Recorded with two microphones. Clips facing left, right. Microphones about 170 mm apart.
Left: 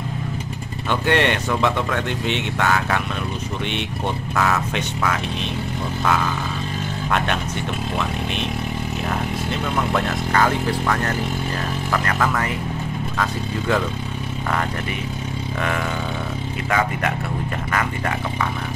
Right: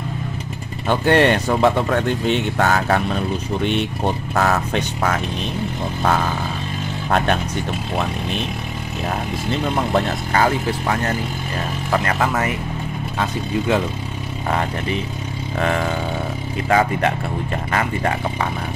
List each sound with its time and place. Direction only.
0.8 s speech: 40° right (ahead or behind)
9.9 s speech: 30° right (ahead or behind)
16.6 s speech: 30° right (ahead or behind)